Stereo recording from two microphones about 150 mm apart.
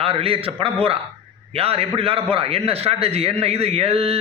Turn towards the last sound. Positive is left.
turn(degrees=-40)  # may be behind; listen again after turning